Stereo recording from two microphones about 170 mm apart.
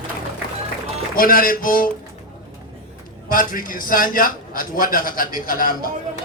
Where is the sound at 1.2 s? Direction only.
55° left (ahead or behind).